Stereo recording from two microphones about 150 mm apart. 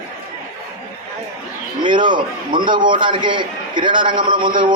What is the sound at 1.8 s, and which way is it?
A man's voice, 30° right (ahead or behind).